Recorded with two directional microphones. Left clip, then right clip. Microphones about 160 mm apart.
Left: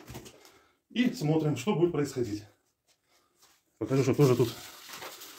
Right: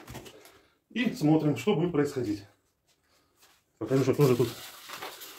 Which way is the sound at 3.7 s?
55° left (ahead or behind).